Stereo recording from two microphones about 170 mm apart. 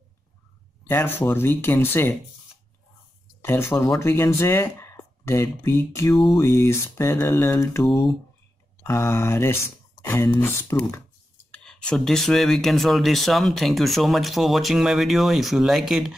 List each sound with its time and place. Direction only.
0.8 s speech: 10° left (ahead or behind)
3.4 s speech: 15° left (ahead or behind)
8.8 s speech: 15° left (ahead or behind); by 16.1 s centre (ahead or behind)